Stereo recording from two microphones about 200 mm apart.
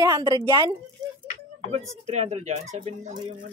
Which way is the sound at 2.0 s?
35° right (ahead or behind).